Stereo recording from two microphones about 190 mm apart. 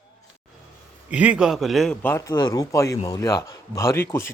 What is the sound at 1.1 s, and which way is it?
A man's voice, 5° right (ahead or behind).